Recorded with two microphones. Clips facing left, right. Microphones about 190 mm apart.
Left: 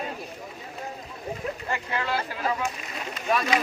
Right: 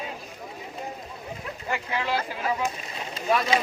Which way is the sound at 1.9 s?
15° right (ahead or behind).